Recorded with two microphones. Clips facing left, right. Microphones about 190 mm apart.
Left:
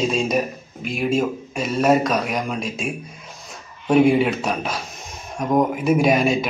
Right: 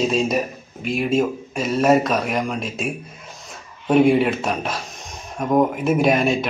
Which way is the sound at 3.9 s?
Centre (ahead or behind).